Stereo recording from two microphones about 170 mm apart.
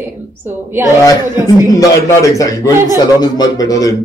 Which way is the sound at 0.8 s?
15° right (ahead or behind).